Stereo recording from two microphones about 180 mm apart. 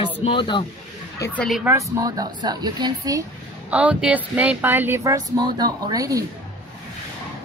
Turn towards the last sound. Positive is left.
turn(degrees=-20)  # may be behind; listen again after turning